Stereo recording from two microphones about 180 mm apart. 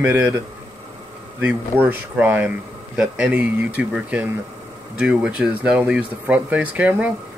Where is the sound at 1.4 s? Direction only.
10° right (ahead or behind).